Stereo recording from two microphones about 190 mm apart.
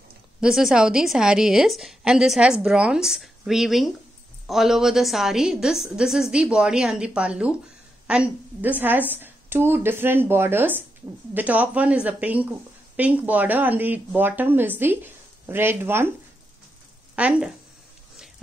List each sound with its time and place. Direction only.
0.4 s a woman's voice: centre (ahead or behind)
17.1 s a woman's voice: 5° right (ahead or behind)